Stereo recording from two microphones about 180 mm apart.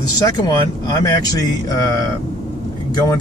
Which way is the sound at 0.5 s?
20° left (ahead or behind).